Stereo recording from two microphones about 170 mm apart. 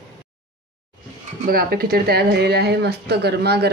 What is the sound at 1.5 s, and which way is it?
Speech, 60° right (ahead or behind).